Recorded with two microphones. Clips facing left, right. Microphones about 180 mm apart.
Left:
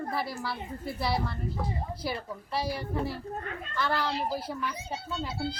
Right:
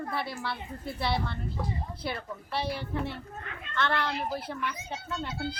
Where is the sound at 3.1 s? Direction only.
40° left (ahead or behind).